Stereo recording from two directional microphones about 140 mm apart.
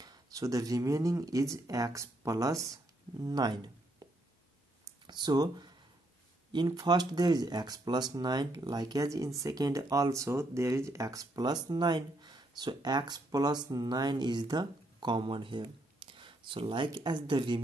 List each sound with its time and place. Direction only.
0.0 s speech: 25° right (ahead or behind)
5.0 s speech: 30° right (ahead or behind)